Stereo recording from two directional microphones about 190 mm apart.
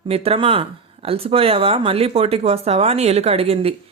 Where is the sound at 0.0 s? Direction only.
30° right (ahead or behind).